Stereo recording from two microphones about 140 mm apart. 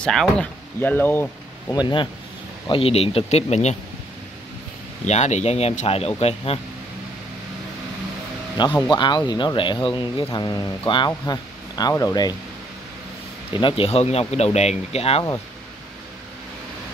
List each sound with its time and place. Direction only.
0.0 s speech: 5° left (ahead or behind)
1.7 s speech: 30° left (ahead or behind)
2.7 s speech: 45° left (ahead or behind)
5.0 s speech: 55° left (ahead or behind)
8.6 s speech: 35° left (ahead or behind)
13.6 s speech: 40° left (ahead or behind)